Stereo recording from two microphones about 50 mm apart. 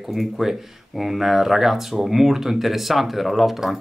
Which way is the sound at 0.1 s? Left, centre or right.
Centre.